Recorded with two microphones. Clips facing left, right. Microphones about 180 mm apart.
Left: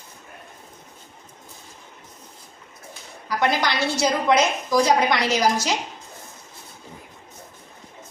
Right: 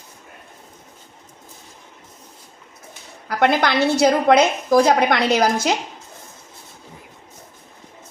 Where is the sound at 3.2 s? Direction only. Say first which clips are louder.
Right 5 dB; 55° right (ahead or behind).